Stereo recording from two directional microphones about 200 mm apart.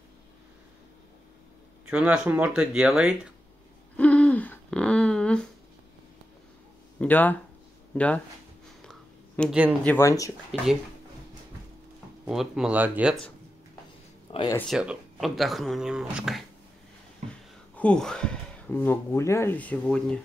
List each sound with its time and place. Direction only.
1.9 s speech: 5° right (ahead or behind)
3.9 s a sound: 5° left (ahead or behind)
7.0 s speech: 10° left (ahead or behind)
9.4 s speech: 5° right (ahead or behind)
9.8 s speech: 15° left (ahead or behind)
12.3 s speech: 5° right (ahead or behind)
14.3 s speech: 30° left (ahead or behind)
14.7 s speech: 5° right (ahead or behind)
17.7 s speech: 5° left (ahead or behind)